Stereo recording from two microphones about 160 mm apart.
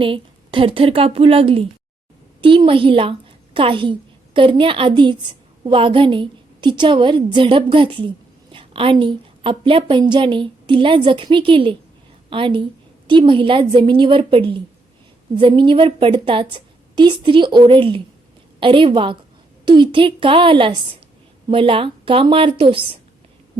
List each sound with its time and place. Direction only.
0.0 s a woman's voice: 35° right (ahead or behind)